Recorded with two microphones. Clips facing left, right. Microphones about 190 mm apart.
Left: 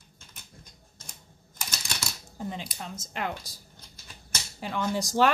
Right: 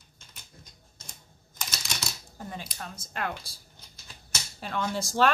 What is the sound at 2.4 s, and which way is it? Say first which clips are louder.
Speech: left 3 dB; 20° left (ahead or behind).